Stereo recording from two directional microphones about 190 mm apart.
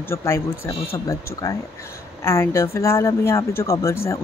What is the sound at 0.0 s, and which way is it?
Speech, 15° left (ahead or behind).